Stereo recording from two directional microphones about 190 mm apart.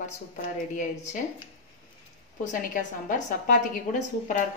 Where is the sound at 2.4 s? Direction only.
45° left (ahead or behind).